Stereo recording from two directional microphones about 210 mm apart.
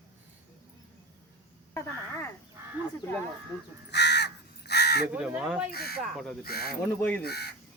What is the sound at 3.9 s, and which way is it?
Crow, 55° left (ahead or behind).